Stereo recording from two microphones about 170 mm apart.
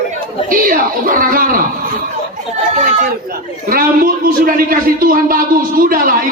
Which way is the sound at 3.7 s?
60° right (ahead or behind).